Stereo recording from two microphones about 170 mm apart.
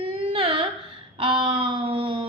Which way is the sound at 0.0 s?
30° right (ahead or behind).